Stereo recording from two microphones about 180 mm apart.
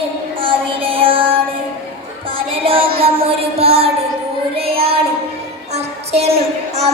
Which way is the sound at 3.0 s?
30° right (ahead or behind).